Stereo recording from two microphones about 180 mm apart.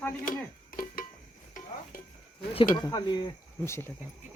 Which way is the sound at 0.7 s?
50° left (ahead or behind).